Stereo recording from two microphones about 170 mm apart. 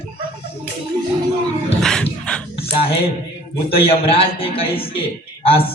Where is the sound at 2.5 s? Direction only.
35° left (ahead or behind).